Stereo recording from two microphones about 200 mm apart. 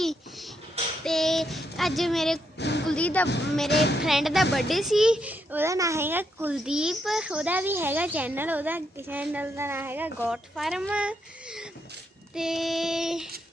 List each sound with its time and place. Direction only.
0.0 s babbling: centre (ahead or behind)
1.0 s child singing: centre (ahead or behind)
2.6 s a sound: 60° left (ahead or behind)
2.8 s speech: 5° left (ahead or behind)
3.7 s music: 55° left (ahead or behind)
4.0 s child singing: centre (ahead or behind)
4.5 s a child's voice: centre (ahead or behind)
12.3 s child singing: centre (ahead or behind)